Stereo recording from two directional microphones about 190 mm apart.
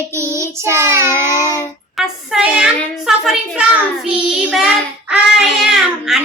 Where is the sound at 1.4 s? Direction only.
20° left (ahead or behind).